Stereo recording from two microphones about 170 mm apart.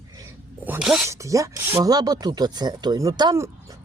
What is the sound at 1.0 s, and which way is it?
Speech, 15° right (ahead or behind).